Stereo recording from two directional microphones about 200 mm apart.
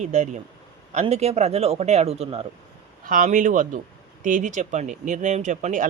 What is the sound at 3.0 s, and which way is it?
Speech, 45° right (ahead or behind).